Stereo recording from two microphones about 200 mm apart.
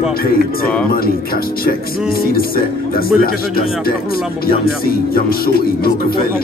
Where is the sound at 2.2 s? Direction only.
50° left (ahead or behind).